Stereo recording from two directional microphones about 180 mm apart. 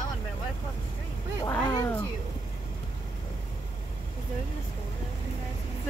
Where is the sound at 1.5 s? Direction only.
20° left (ahead or behind).